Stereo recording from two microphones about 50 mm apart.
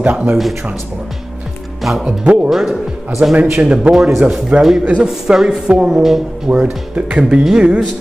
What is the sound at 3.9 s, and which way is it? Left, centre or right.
Speech, centre.